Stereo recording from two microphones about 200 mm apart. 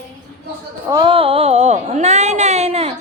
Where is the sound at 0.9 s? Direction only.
25° right (ahead or behind).